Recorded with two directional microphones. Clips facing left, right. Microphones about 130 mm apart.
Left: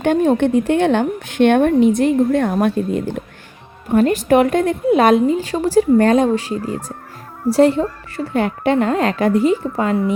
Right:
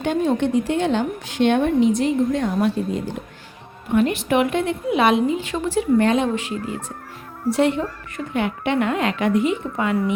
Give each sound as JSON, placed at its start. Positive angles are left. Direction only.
{"t": 0.0, "sound": "a woman's voice", "side_deg": 55}
{"t": 3.9, "sound": "a woman's voice", "side_deg": 40}